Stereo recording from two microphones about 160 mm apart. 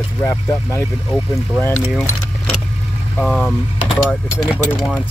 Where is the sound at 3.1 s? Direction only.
5° left (ahead or behind).